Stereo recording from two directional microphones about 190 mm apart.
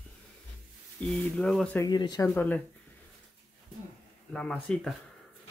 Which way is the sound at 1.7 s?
20° left (ahead or behind).